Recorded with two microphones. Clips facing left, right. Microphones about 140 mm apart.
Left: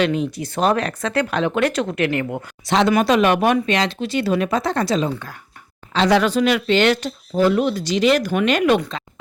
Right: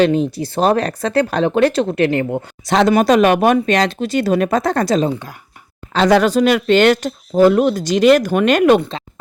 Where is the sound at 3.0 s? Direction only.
45° right (ahead or behind).